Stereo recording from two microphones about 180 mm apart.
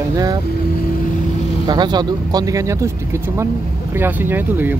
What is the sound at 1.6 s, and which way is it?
Speech, 25° right (ahead or behind).